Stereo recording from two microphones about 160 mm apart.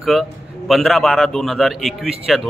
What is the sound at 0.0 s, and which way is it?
A man's voice, centre (ahead or behind).